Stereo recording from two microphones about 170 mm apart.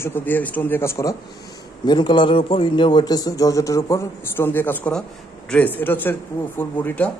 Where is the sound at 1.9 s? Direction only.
25° left (ahead or behind); by 6.1 s 10° left (ahead or behind).